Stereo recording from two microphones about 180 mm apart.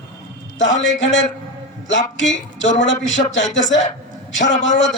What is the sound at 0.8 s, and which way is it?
Speech, 90° left.